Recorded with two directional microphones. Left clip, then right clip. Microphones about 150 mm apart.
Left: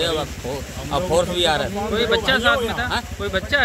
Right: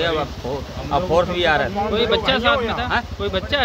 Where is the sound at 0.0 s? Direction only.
Centre (ahead or behind).